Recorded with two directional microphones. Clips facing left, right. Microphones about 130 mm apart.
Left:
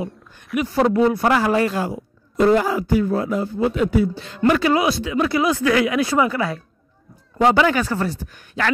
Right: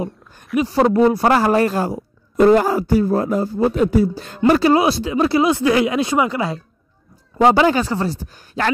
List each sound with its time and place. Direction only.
0.6 s a man's voice: 30° right (ahead or behind)